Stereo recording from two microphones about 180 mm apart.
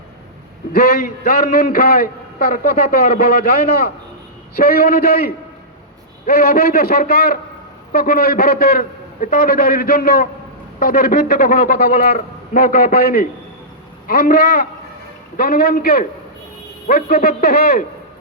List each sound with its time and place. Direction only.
0.7 s a man's voice: 55° left (ahead or behind)